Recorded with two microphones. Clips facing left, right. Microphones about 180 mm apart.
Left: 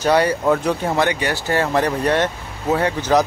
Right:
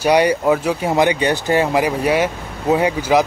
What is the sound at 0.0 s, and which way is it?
Speech, 15° right (ahead or behind).